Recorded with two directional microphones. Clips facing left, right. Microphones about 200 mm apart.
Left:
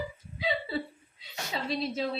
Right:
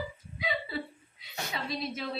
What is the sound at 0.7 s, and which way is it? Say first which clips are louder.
A woman's voice: left 3 dB; 25° left (ahead or behind).